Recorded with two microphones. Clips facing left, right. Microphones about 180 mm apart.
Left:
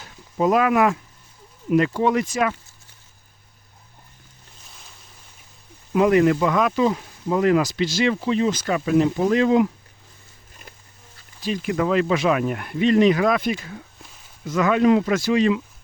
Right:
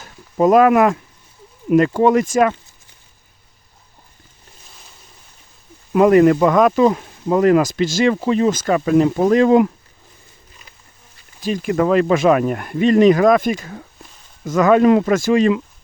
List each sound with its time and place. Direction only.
0.0 s a sound: 50° right (ahead or behind)
1.7 s speech: 45° right (ahead or behind)
5.9 s speech: 50° right (ahead or behind)
11.4 s speech: 45° right (ahead or behind)